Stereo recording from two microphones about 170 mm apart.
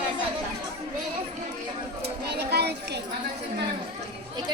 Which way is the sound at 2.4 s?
70° right (ahead or behind).